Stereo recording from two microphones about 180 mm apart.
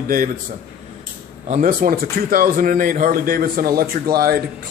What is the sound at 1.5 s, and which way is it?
Speech, 50° right (ahead or behind).